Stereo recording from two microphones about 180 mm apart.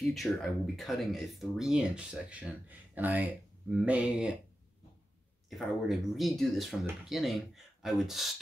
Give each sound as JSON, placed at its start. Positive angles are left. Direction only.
{"t": 0.1, "sound": "speech", "side_deg": 0}
{"t": 5.5, "sound": "speech", "side_deg": 0}